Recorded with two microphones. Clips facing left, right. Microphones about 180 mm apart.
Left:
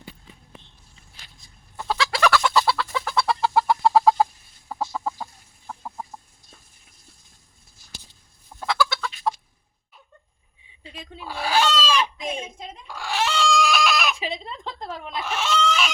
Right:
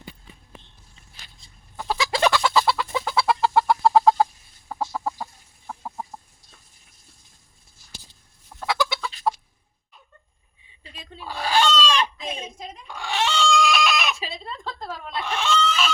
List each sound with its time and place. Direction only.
1.7 s chicken: 10° right (ahead or behind)
2.0 s chicken: 20° right (ahead or behind)
2.4 s chicken: 5° right (ahead or behind)
2.8 s chicken: 20° right (ahead or behind)
3.2 s chicken: 5° right (ahead or behind)
9.3 s chicken: 5° right (ahead or behind)
10.9 s fowl: 10° left (ahead or behind)
12.9 s a sound: centre (ahead or behind)
14.2 s a sound: 15° left (ahead or behind)
15.2 s fowl: 5° left (ahead or behind)